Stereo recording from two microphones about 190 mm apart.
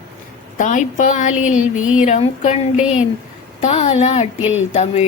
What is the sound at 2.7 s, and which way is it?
Speech, 5° right (ahead or behind).